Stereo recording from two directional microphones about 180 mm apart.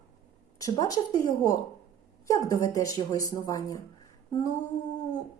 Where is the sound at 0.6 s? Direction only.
20° left (ahead or behind).